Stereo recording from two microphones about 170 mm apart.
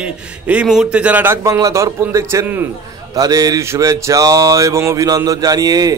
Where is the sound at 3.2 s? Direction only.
20° right (ahead or behind).